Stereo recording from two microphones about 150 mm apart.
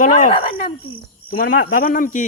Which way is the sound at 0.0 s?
60° left (ahead or behind).